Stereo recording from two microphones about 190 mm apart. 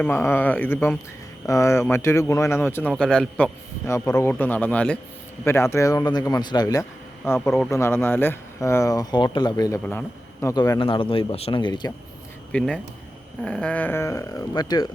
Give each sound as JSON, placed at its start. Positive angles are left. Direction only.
{"t": 0.0, "sound": "speech", "side_deg": 10}
{"t": 12.5, "sound": "speech", "side_deg": 5}